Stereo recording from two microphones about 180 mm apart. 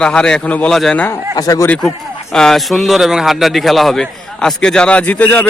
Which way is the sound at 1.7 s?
5° left (ahead or behind).